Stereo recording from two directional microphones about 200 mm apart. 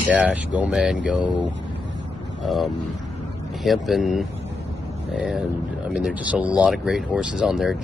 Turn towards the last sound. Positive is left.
turn(degrees=0)  # may be behind; listen again after turning